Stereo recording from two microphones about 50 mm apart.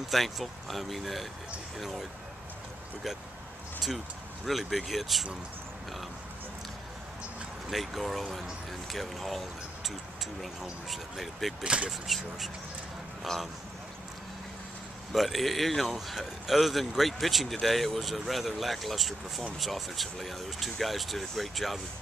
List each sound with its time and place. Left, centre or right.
0.1 s speech: centre
4.5 s speech: centre
7.7 s speech: centre
11.6 s speech: right
15.1 s speech: centre